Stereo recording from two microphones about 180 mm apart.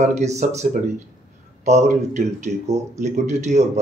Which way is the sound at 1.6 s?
40° right (ahead or behind).